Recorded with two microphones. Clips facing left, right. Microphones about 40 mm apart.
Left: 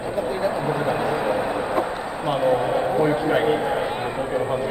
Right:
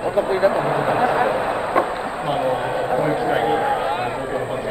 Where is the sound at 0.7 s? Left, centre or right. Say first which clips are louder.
Right 4 dB; right.